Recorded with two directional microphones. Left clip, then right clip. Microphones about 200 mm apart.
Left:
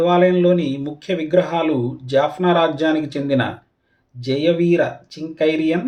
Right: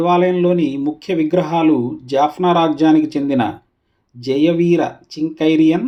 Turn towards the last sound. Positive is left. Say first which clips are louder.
# right 4 dB
turn(degrees=-45)  # may be behind; listen again after turning